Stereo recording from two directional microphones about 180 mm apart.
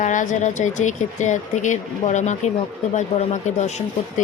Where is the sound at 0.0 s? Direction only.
45° left (ahead or behind).